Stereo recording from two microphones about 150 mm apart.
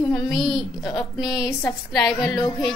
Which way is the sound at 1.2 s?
25° left (ahead or behind).